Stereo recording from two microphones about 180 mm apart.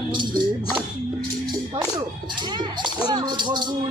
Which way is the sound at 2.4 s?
25° right (ahead or behind).